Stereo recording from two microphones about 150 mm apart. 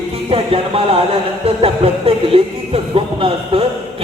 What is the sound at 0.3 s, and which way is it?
Speech, 40° right (ahead or behind).